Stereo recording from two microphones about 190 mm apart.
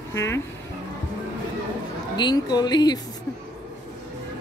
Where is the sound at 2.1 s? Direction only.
20° left (ahead or behind).